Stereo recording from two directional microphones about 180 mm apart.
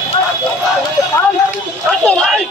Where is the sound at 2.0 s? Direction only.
5° left (ahead or behind).